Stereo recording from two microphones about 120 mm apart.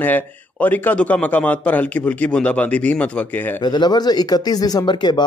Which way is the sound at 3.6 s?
40° left (ahead or behind).